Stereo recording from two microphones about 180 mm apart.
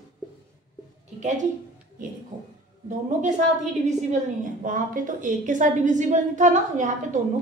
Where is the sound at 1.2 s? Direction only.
45° right (ahead or behind).